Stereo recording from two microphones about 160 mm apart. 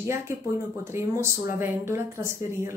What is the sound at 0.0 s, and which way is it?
Speech, 15° right (ahead or behind).